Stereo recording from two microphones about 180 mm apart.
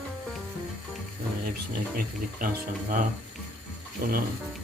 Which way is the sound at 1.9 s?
50° right (ahead or behind).